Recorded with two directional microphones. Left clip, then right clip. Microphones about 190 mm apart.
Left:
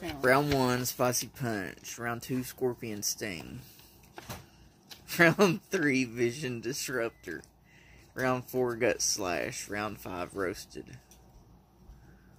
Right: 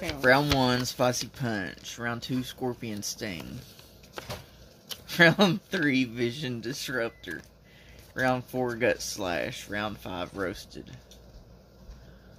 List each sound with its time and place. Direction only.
0.2 s speech: 5° right (ahead or behind)
5.0 s speech: 10° right (ahead or behind)